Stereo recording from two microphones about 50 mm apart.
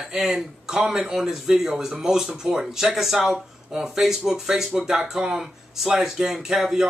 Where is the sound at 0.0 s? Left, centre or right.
Centre.